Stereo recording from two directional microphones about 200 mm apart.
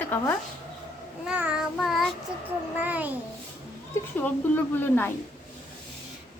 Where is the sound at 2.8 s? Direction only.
10° right (ahead or behind).